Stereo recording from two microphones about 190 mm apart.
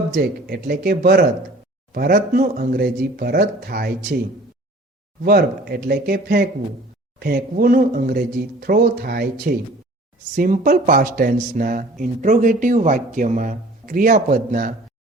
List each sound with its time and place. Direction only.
0.1 s speech: 55° right (ahead or behind)
5.2 s speech: 55° right (ahead or behind)
10.3 s speech: 45° right (ahead or behind)